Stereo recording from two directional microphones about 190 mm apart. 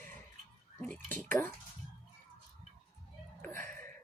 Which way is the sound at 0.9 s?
10° left (ahead or behind).